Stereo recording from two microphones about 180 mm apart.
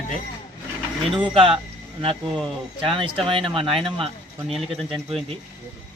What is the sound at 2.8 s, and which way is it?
Speech, 30° right (ahead or behind).